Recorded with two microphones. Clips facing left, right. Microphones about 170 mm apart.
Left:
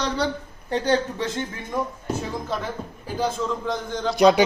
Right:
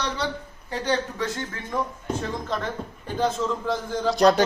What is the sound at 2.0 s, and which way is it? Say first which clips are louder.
A man's voice: left 1 dB; 5° left (ahead or behind).